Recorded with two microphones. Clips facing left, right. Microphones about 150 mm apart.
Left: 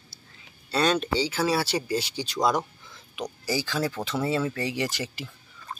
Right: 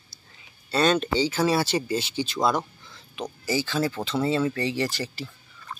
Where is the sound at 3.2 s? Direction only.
10° left (ahead or behind).